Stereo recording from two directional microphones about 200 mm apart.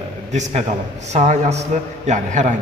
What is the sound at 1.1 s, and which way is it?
A man's voice, 35° right (ahead or behind).